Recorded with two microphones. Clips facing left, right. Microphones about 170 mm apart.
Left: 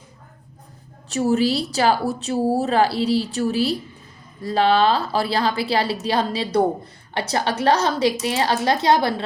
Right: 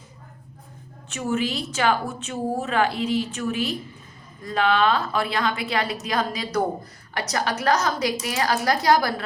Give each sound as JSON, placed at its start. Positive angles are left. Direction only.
{"t": 1.1, "sound": "a woman's voice", "side_deg": 35}